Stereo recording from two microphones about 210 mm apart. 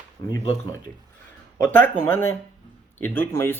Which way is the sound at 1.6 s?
10° left (ahead or behind).